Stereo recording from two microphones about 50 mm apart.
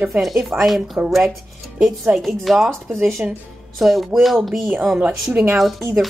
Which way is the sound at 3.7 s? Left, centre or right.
Centre.